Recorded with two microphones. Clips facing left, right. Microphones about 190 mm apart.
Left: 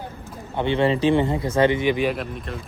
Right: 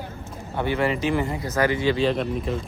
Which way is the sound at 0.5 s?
25° left (ahead or behind).